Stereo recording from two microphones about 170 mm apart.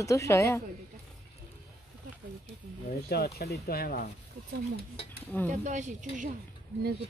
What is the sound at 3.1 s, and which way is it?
Speech, 65° left (ahead or behind).